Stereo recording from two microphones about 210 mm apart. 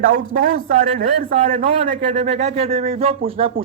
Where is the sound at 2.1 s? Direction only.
30° right (ahead or behind).